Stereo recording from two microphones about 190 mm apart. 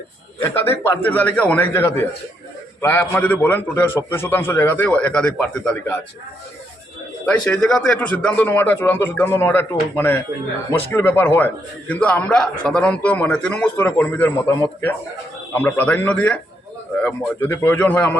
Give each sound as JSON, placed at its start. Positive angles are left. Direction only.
{"t": 0.4, "sound": "a man's voice", "side_deg": 10}
{"t": 7.3, "sound": "a man's voice", "side_deg": 5}